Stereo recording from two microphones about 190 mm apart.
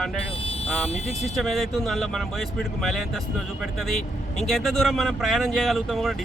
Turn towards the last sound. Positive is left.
turn(degrees=0)  # may be behind; listen again after turning